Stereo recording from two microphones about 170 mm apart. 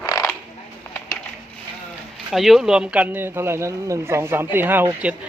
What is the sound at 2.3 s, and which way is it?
A man's voice, centre (ahead or behind).